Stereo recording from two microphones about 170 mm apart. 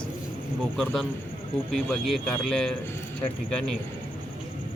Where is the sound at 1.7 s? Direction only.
Centre (ahead or behind).